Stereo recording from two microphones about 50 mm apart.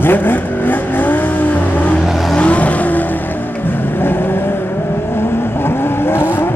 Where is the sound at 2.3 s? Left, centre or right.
Left.